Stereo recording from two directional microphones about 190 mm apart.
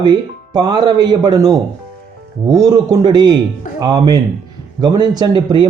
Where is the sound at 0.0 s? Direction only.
20° right (ahead or behind).